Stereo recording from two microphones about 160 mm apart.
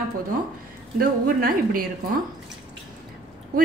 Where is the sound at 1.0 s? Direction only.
65° right (ahead or behind).